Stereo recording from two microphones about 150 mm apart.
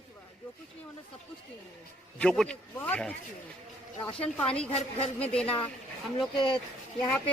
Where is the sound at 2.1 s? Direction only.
5° left (ahead or behind).